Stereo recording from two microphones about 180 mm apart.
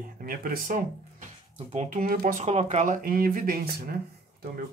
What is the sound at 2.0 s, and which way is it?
Speech, 50° right (ahead or behind).